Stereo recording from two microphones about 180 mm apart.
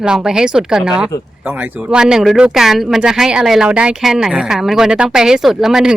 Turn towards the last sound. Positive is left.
turn(degrees=-5)  # may be behind; listen again after turning